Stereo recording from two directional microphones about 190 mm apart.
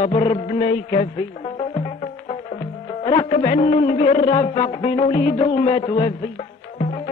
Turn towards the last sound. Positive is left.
turn(degrees=35)  # may be behind; listen again after turning